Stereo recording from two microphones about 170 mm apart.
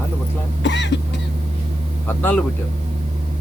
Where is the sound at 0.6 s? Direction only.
90° left.